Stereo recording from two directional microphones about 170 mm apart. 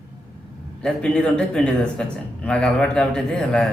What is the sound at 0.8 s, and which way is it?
A man's voice, 5° left (ahead or behind).